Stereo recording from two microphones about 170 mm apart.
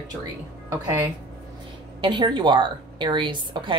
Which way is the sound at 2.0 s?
30° right (ahead or behind).